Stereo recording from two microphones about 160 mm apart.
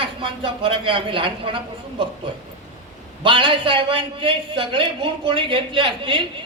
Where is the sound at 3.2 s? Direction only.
30° right (ahead or behind).